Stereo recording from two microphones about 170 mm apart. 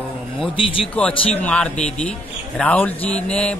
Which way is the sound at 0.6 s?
30° left (ahead or behind).